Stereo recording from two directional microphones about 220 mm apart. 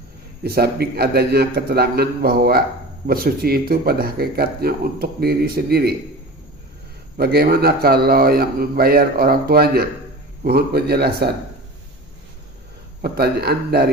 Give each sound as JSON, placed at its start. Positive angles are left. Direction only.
{"t": 0.4, "sound": "speech", "side_deg": -45}
{"t": 7.2, "sound": "speech", "side_deg": -45}
{"t": 13.0, "sound": "speech", "side_deg": -45}